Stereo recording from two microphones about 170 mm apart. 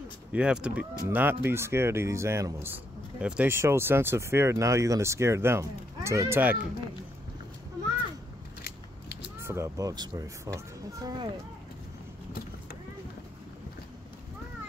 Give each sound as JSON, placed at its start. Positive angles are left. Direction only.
{"t": 0.3, "sound": "speech", "side_deg": -5}
{"t": 9.4, "sound": "speech", "side_deg": -15}